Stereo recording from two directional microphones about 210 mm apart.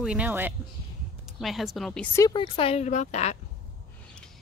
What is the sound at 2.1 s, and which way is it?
Speech, 20° left (ahead or behind).